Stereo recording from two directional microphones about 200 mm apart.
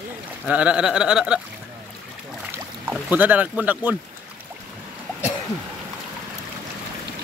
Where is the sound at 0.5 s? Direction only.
5° right (ahead or behind).